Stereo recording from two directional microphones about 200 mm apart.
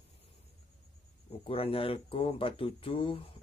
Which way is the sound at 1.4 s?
30° left (ahead or behind).